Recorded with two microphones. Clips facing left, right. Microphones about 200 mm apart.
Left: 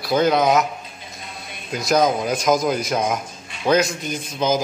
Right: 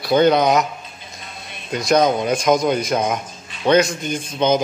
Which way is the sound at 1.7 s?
Centre (ahead or behind).